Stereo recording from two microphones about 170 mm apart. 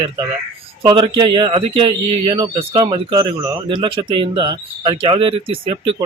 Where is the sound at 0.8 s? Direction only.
25° right (ahead or behind).